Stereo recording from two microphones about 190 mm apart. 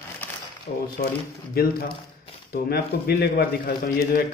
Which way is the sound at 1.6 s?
55° left (ahead or behind).